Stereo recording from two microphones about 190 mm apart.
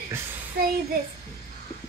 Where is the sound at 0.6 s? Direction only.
55° right (ahead or behind).